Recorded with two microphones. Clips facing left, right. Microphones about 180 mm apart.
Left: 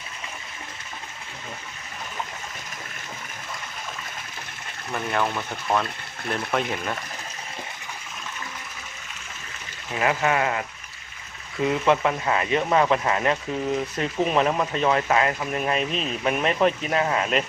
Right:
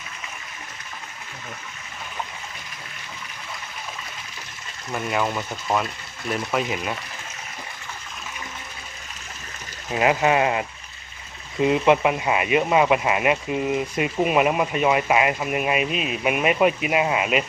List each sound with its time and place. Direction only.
6.3 s speech: 5° right (ahead or behind)
9.9 s speech: 20° right (ahead or behind)